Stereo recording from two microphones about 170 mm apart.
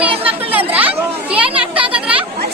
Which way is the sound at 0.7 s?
10° right (ahead or behind).